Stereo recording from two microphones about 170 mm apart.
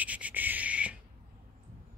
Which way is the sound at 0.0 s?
10° right (ahead or behind).